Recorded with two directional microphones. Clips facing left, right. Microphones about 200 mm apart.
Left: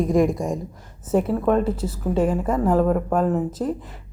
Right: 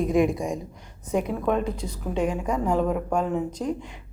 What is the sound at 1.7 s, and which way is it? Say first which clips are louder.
A woman's voice: left 6 dB; 5° left (ahead or behind).